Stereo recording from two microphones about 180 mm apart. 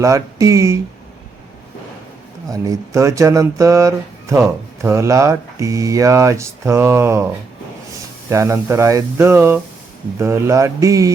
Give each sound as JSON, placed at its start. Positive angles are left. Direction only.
{"t": 0.0, "sound": "speech", "side_deg": -15}
{"t": 2.5, "sound": "speech", "side_deg": -15}
{"t": 8.3, "sound": "speech", "side_deg": -15}